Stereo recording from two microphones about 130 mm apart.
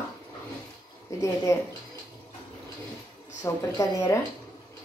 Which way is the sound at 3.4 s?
25° left (ahead or behind).